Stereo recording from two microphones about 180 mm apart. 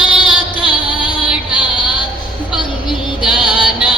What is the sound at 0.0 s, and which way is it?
Female singing, 5° right (ahead or behind).